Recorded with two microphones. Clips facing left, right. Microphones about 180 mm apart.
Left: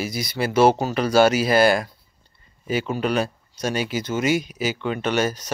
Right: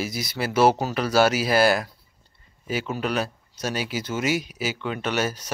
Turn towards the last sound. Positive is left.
turn(degrees=-5)  # may be behind; listen again after turning